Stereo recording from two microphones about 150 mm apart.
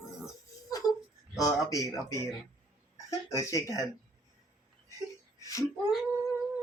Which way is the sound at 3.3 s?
20° left (ahead or behind).